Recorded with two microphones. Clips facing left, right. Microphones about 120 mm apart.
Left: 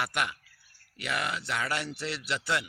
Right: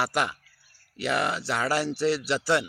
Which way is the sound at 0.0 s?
30° right (ahead or behind).